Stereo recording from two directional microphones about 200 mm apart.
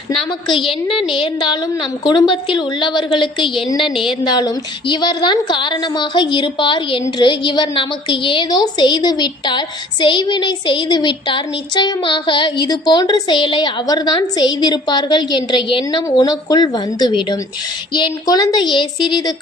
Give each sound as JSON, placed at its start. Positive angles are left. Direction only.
{"t": 0.3, "sound": "a woman's voice", "side_deg": 25}